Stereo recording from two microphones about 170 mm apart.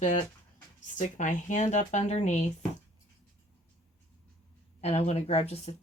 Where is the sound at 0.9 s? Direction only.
45° left (ahead or behind).